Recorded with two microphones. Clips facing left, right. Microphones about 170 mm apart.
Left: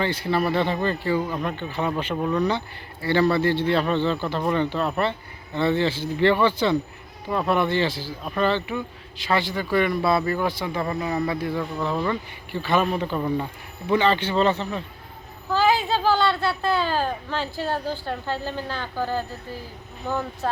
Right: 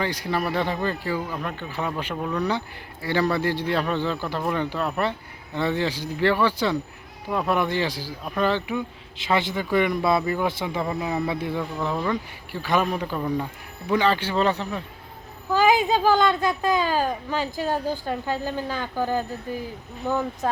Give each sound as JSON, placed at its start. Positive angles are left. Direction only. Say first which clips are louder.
{"t": 0.0, "sound": "speech", "louder": "left 3 dB", "side_deg": -10}
{"t": 2.1, "sound": "speech", "louder": "left 4 dB", "side_deg": 5}
{"t": 2.5, "sound": "a man's voice", "louder": "left 1 dB", "side_deg": -10}
{"t": 10.8, "sound": "speech", "louder": "left 2 dB", "side_deg": -5}
{"t": 11.3, "sound": "a man's voice", "louder": "left 1 dB", "side_deg": -20}
{"t": 11.6, "sound": "speech", "louder": "left 1 dB", "side_deg": -5}
{"t": 13.1, "sound": "speech", "louder": "left 1 dB", "side_deg": 10}
{"t": 14.0, "sound": "speech", "louder": "left 1 dB", "side_deg": -10}